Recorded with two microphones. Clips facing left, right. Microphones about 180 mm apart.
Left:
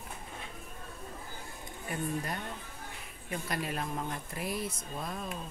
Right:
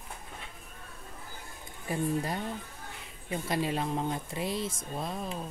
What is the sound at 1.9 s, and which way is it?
Speech, 30° right (ahead or behind).